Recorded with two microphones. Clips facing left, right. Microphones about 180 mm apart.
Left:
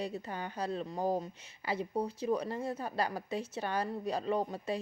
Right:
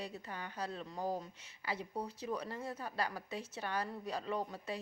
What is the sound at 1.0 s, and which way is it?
Speech, 45° left (ahead or behind).